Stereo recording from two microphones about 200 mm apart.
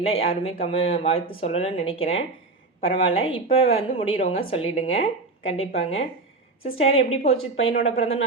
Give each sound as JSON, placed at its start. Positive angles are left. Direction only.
{"t": 0.1, "sound": "speech", "side_deg": 30}